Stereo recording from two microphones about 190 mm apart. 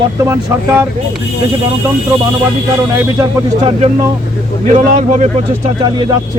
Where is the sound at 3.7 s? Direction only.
30° right (ahead or behind).